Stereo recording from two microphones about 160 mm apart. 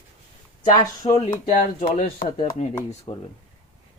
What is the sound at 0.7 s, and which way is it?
Speech, 25° left (ahead or behind).